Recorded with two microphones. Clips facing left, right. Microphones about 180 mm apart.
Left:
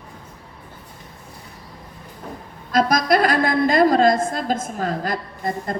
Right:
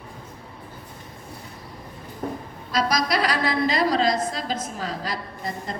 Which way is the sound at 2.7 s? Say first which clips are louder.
Left 6 dB; 50° left (ahead or behind).